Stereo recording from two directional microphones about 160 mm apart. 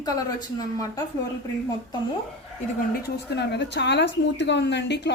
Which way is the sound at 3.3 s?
90° left.